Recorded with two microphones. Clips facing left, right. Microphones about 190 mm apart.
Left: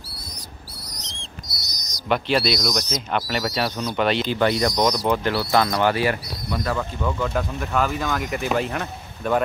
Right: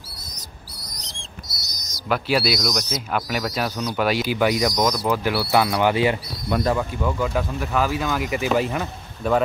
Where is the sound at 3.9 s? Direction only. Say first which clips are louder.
Even; 5° right (ahead or behind).